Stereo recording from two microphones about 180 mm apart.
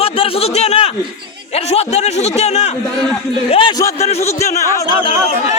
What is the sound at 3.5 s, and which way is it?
Speech, 25° left (ahead or behind).